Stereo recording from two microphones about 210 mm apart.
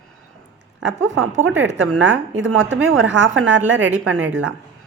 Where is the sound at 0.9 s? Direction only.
65° right (ahead or behind).